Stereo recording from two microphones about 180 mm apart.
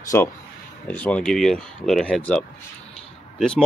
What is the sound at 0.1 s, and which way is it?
Speech, 15° left (ahead or behind).